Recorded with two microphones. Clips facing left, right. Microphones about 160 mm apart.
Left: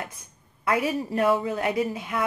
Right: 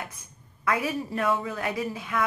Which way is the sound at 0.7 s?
30° left (ahead or behind).